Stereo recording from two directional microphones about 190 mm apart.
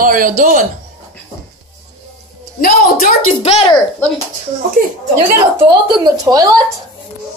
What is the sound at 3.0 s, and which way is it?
Speech, 35° left (ahead or behind).